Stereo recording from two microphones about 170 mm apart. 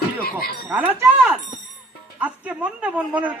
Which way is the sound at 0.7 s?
10° right (ahead or behind).